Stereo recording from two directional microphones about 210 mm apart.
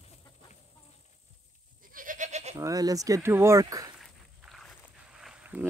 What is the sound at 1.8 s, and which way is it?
Goat, 40° right (ahead or behind).